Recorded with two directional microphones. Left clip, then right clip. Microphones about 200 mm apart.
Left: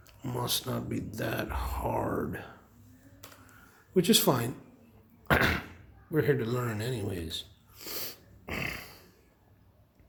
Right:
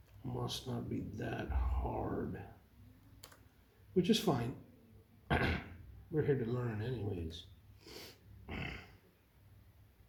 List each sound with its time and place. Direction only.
0.3 s speech: 45° left (ahead or behind)
3.9 s speech: 45° left (ahead or behind)
5.3 s door: 45° left (ahead or behind)
6.1 s speech: 45° left (ahead or behind)